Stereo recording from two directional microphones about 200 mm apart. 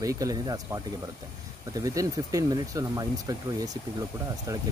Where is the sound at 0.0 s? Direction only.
15° right (ahead or behind).